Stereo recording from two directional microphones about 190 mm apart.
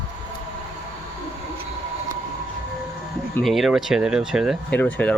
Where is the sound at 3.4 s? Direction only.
Centre (ahead or behind).